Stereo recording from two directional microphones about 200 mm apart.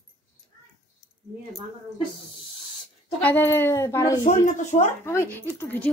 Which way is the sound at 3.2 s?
10° left (ahead or behind).